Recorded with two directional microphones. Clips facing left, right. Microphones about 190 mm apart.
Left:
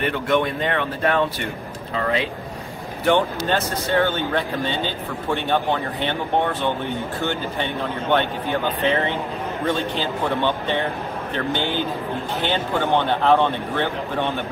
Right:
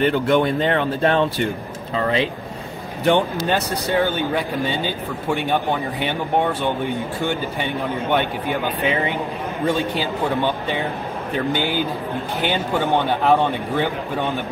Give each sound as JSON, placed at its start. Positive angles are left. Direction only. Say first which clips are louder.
{"t": 0.0, "sound": "speech", "louder": "right 4 dB", "side_deg": -30}
{"t": 3.1, "sound": "speech", "louder": "right 1 dB", "side_deg": -15}